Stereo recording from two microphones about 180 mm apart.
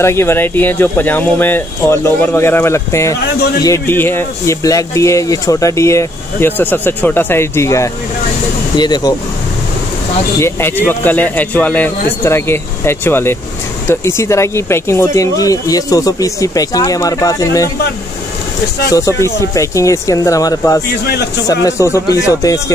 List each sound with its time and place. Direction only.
0.0 s speech: 15° left (ahead or behind)
10.4 s speech: 10° left (ahead or behind)
18.9 s speech: 20° left (ahead or behind)